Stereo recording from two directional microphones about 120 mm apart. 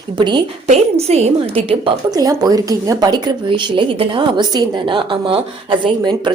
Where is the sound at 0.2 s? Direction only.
40° right (ahead or behind).